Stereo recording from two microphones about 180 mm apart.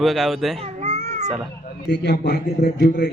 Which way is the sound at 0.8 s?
40° right (ahead or behind).